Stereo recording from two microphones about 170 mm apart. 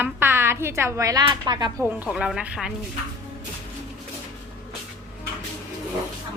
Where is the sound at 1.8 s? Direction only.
10° right (ahead or behind).